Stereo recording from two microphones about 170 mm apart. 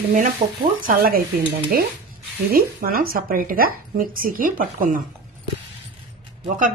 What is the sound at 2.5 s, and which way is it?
Speech, 60° right (ahead or behind).